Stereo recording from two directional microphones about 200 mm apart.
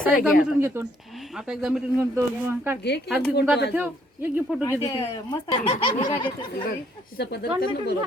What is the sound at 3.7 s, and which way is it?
Speech, 10° right (ahead or behind).